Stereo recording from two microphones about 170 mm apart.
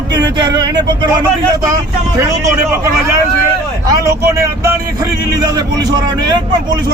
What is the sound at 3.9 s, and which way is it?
Speech, 15° right (ahead or behind).